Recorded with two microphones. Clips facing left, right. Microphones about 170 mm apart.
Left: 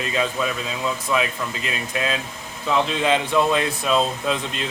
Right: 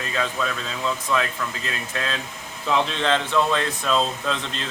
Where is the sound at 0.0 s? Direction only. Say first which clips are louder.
Left 3 dB; 15° left (ahead or behind).